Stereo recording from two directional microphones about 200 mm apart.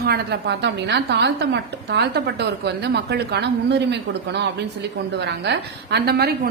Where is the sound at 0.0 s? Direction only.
50° right (ahead or behind).